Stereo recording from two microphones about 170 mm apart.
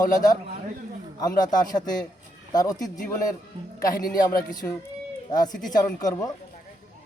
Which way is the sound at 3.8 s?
55° left (ahead or behind).